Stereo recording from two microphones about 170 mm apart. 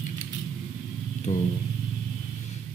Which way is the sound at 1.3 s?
40° left (ahead or behind).